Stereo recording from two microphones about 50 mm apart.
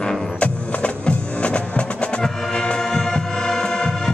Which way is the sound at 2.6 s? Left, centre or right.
Centre.